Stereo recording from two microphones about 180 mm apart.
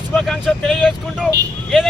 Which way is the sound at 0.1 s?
5° left (ahead or behind).